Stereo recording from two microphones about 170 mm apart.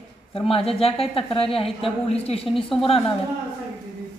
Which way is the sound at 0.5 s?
35° left (ahead or behind).